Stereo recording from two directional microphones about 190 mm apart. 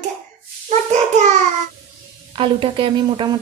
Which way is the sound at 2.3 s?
25° right (ahead or behind).